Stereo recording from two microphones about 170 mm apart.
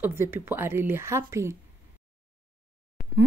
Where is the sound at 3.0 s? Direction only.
60° left (ahead or behind).